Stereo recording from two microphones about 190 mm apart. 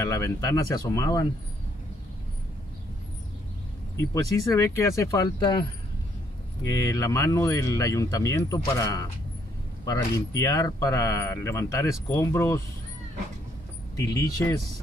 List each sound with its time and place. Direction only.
0.0 s speech: 15° left (ahead or behind)
4.0 s speech: 15° left (ahead or behind)
6.6 s speech: 15° left (ahead or behind)
13.9 s speech: 15° left (ahead or behind)